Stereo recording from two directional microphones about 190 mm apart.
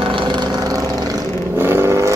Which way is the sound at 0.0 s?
25° right (ahead or behind).